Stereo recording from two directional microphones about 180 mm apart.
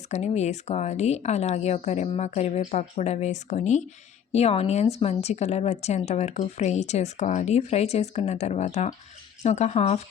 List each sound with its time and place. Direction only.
0.1 s a woman's voice: 40° left (ahead or behind)